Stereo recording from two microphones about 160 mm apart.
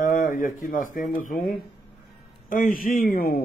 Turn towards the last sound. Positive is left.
turn(degrees=65)  # may be behind; listen again after turning